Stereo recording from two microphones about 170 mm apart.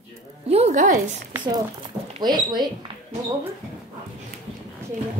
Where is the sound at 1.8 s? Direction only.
25° right (ahead or behind).